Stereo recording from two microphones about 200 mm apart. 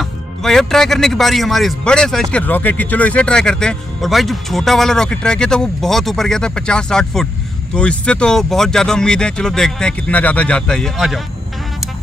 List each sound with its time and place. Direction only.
0.0 s speech: centre (ahead or behind)